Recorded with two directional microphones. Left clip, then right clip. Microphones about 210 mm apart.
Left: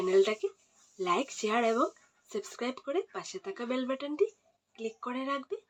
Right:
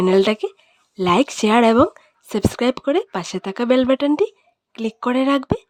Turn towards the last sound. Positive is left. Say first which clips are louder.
# right 16 dB
turn(degrees=-60)  # may be behind; listen again after turning